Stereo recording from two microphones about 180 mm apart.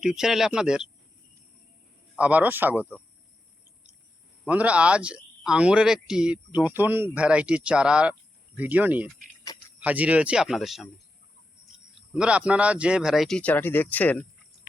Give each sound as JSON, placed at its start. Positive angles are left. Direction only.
{"t": 0.0, "sound": "a man's voice", "side_deg": 0}
{"t": 2.1, "sound": "speech", "side_deg": -5}
{"t": 4.4, "sound": "speech", "side_deg": -5}
{"t": 9.4, "sound": "a sound", "side_deg": 20}
{"t": 9.8, "sound": "a man's voice", "side_deg": -10}